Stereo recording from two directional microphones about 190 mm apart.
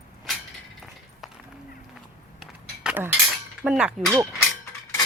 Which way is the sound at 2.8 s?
10° right (ahead or behind).